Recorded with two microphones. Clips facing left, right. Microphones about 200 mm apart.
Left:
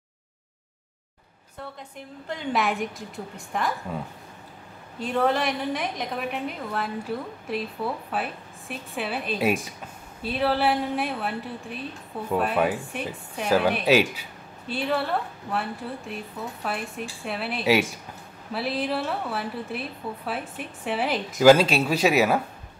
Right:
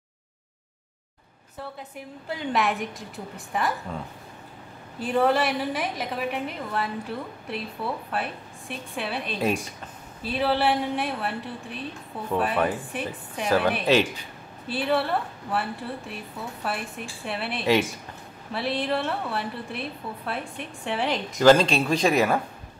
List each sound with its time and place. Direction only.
2.0 s a woman's voice: 5° right (ahead or behind)
5.0 s a woman's voice: 5° right (ahead or behind)
8.1 s a woman's voice: centre (ahead or behind)